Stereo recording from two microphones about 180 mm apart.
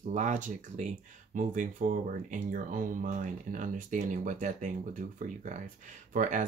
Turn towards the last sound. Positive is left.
turn(degrees=-45)  # may be behind; listen again after turning